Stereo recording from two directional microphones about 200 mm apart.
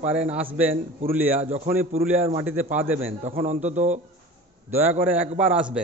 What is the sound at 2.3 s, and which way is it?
Speech, 10° right (ahead or behind).